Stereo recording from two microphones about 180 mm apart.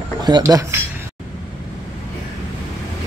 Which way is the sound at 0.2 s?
20° right (ahead or behind).